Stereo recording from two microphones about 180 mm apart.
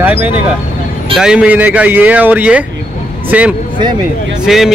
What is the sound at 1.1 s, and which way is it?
A man's voice, 5° right (ahead or behind).